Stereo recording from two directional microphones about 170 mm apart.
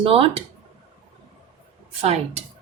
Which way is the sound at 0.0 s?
35° right (ahead or behind).